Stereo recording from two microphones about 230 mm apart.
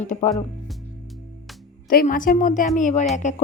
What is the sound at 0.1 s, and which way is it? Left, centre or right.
Speech, left.